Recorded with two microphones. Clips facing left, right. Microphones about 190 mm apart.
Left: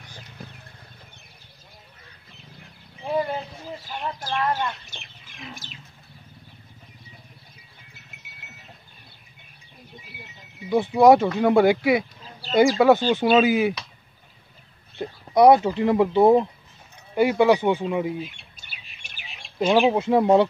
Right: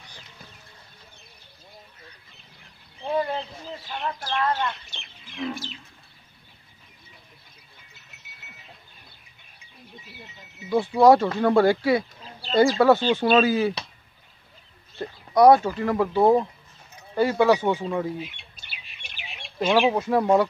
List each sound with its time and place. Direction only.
3.0 s wild animals: 10° left (ahead or behind)
4.3 s speech: 10° left (ahead or behind)
10.7 s speech: 20° left (ahead or behind)
15.0 s speech: 20° left (ahead or behind)
16.2 s speech: 5° left (ahead or behind)
18.2 s bird: 45° left (ahead or behind)
19.6 s speech: 10° left (ahead or behind)
20.0 s speech: 20° left (ahead or behind)